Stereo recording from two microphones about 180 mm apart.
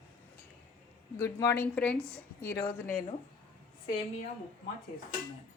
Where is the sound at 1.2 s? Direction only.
15° left (ahead or behind).